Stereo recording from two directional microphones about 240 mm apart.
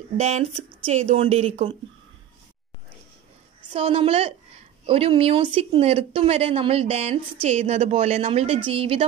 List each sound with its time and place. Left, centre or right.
0.2 s speech: right
3.7 s speech: right